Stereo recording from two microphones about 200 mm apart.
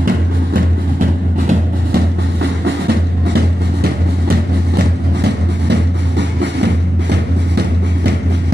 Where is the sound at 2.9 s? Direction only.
50° right (ahead or behind).